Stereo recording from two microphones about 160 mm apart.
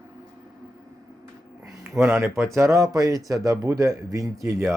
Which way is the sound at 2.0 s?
15° right (ahead or behind).